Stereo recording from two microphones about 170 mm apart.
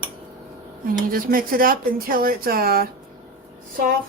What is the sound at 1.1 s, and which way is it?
Speech, 55° right (ahead or behind).